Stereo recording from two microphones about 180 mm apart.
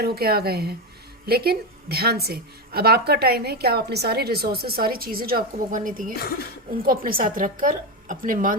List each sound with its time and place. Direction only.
0.0 s a woman's voice: 60° right (ahead or behind)
6.1 s speech: 60° left (ahead or behind)
6.8 s a woman's voice: 55° right (ahead or behind)